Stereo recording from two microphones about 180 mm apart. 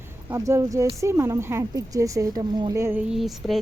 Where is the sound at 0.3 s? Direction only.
15° right (ahead or behind).